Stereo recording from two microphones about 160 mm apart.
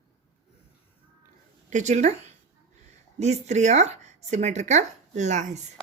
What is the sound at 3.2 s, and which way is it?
Speech, 45° right (ahead or behind).